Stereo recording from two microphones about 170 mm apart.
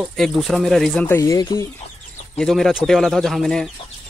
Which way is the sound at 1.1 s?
20° left (ahead or behind).